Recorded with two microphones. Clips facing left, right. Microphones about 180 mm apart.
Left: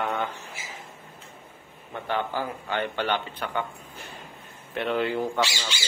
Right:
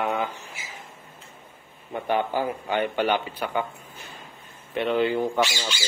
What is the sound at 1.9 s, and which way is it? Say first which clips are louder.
A man's voice: right 4 dB; 15° right (ahead or behind).